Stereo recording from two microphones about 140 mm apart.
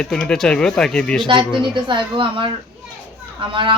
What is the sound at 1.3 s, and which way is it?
A child's voice, 35° right (ahead or behind).